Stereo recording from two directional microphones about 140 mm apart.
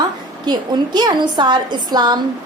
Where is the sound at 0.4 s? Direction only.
30° right (ahead or behind).